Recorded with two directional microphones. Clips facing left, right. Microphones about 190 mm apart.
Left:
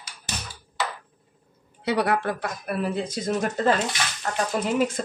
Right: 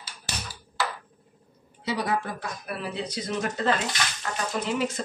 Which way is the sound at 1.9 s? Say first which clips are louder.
Left 5 dB; 65° left (ahead or behind).